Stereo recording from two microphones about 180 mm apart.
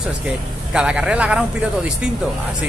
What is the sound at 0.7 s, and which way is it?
Speech, 5° right (ahead or behind).